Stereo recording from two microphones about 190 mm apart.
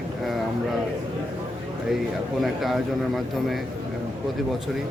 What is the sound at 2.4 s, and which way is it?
Speech, centre (ahead or behind).